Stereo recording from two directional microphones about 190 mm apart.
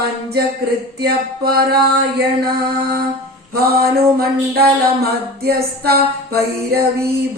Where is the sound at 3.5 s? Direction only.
55° right (ahead or behind).